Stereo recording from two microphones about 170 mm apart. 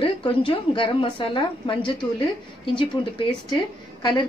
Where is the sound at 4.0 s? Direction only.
25° left (ahead or behind).